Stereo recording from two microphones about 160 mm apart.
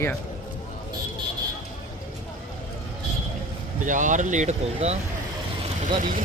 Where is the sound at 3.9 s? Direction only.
55° right (ahead or behind).